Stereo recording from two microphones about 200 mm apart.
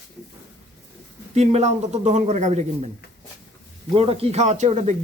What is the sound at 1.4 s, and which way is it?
A man's voice, 35° right (ahead or behind).